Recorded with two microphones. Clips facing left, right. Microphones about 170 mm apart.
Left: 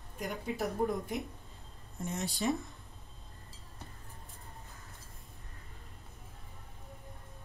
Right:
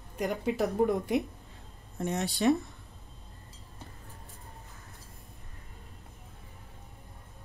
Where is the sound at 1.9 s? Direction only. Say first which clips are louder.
Right 6 dB; 70° right (ahead or behind).